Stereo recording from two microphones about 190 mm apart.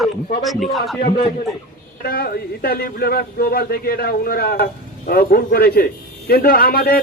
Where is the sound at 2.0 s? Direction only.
55° left (ahead or behind).